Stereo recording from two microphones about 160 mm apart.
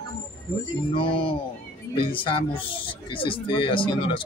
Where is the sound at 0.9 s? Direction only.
30° left (ahead or behind).